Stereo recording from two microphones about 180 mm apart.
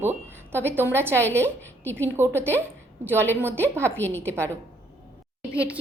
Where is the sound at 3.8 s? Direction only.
10° left (ahead or behind).